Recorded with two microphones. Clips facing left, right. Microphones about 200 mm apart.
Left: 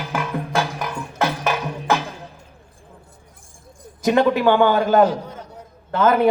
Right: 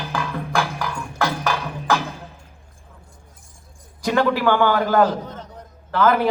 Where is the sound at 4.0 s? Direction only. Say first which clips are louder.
Left 3 dB; 20° left (ahead or behind).